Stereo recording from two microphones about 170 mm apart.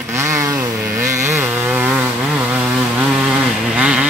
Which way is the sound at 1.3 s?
10° right (ahead or behind).